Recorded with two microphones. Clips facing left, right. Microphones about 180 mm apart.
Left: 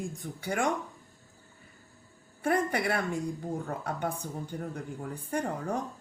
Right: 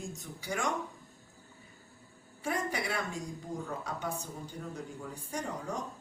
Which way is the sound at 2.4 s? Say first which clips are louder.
Left 6 dB; 55° left (ahead or behind).